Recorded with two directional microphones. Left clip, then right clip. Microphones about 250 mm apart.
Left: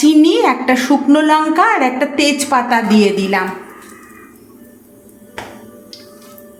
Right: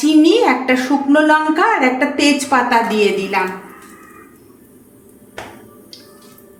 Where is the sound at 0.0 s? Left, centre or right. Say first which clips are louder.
Left 1 dB; left.